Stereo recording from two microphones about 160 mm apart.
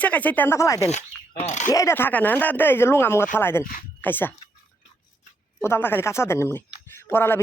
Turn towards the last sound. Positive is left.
turn(degrees=15)  # may be behind; listen again after turning